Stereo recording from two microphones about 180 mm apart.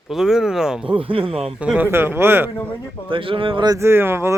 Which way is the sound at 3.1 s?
30° right (ahead or behind).